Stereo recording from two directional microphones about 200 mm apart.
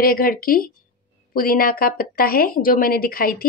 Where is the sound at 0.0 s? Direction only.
45° left (ahead or behind).